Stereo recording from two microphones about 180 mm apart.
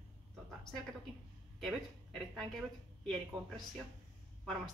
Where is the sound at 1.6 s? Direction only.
Centre (ahead or behind).